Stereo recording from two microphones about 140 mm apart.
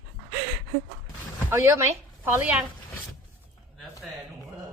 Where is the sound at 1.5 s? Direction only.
20° right (ahead or behind).